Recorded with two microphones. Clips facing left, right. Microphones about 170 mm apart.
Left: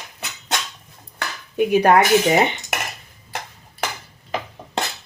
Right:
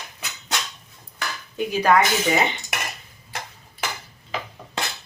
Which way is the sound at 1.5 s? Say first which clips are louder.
Left 4 dB; 60° left (ahead or behind).